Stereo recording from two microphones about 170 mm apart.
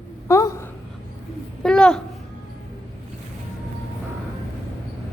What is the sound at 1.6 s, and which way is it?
Speech, 5° left (ahead or behind).